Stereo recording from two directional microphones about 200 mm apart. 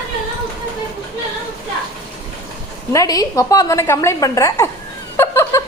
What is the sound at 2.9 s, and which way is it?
A woman's voice, 20° left (ahead or behind).